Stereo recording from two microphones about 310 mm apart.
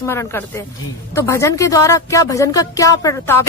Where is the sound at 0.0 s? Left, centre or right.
Centre.